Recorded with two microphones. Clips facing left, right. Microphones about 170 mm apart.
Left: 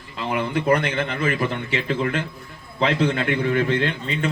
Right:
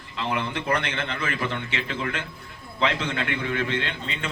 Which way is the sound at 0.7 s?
35° left (ahead or behind).